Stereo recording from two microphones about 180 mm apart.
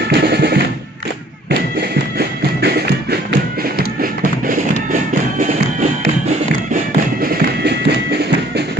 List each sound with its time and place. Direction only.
0.1 s music: 65° right (ahead or behind)
1.8 s music: 65° right (ahead or behind)
6.7 s music: 60° right (ahead or behind)